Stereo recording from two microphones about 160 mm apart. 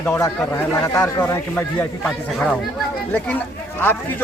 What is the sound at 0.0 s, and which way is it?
Speech, 15° left (ahead or behind).